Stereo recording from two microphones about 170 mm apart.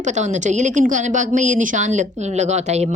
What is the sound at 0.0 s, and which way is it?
Speech, 45° right (ahead or behind).